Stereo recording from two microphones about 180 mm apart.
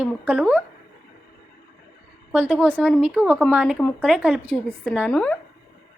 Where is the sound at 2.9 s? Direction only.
5° right (ahead or behind).